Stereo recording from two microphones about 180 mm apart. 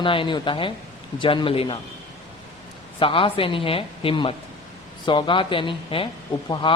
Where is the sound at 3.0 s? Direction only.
30° left (ahead or behind).